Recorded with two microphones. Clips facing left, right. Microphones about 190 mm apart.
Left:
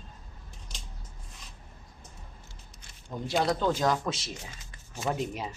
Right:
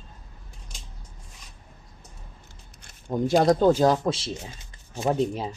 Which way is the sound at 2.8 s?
55° right (ahead or behind).